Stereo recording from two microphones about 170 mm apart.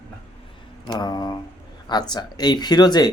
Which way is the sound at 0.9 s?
25° left (ahead or behind).